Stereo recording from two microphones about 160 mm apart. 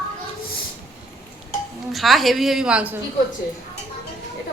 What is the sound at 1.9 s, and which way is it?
A woman's voice, centre (ahead or behind).